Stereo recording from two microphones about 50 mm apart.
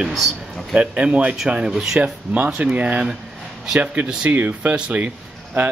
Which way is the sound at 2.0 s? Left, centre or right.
Right.